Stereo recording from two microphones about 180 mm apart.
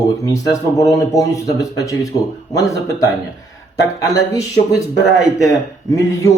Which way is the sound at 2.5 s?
20° left (ahead or behind).